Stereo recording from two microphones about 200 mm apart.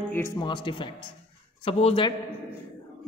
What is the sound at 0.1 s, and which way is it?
Speech, 10° left (ahead or behind).